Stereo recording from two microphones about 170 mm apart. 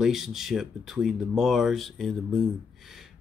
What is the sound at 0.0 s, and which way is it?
Speech, centre (ahead or behind).